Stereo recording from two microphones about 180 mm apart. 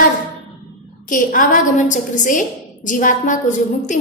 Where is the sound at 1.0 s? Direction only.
45° left (ahead or behind).